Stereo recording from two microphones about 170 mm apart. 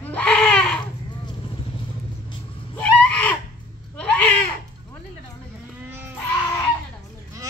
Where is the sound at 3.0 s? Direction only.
10° left (ahead or behind).